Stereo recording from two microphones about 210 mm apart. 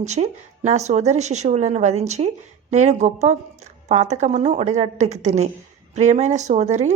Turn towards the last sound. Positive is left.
turn(degrees=-35)  # may be behind; listen again after turning